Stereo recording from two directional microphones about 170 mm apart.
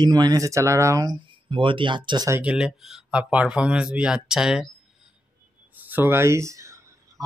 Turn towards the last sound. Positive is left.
turn(degrees=-20)  # may be behind; listen again after turning